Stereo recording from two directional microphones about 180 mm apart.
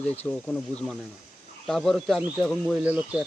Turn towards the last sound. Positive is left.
turn(degrees=-5)  # may be behind; listen again after turning